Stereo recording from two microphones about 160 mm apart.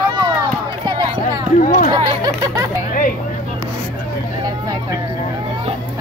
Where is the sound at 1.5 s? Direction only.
55° left (ahead or behind).